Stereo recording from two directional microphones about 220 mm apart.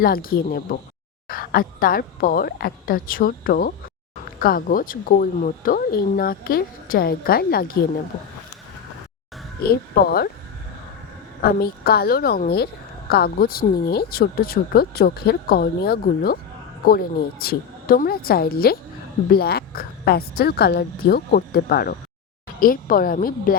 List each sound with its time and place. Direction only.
0.0 s speech: 40° left (ahead or behind)
9.6 s speech: 45° left (ahead or behind)
11.4 s speech: 45° left (ahead or behind)